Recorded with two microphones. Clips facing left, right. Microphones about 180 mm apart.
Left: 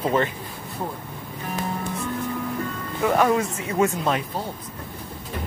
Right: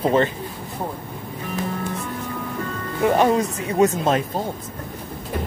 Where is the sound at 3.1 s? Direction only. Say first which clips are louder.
Right 2 dB; 25° right (ahead or behind).